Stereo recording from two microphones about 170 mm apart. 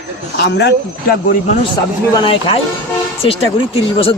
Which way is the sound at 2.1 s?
30° left (ahead or behind).